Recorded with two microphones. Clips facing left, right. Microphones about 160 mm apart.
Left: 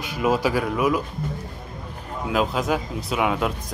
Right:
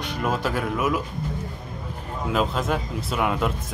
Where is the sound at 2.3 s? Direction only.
Centre (ahead or behind).